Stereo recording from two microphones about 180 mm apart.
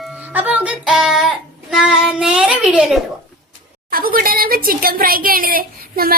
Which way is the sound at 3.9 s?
55° right (ahead or behind).